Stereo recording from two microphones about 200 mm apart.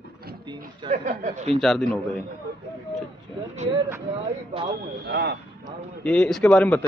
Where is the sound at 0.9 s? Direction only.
35° right (ahead or behind).